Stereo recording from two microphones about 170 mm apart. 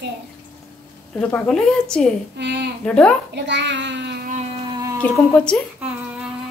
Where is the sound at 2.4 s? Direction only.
90° right.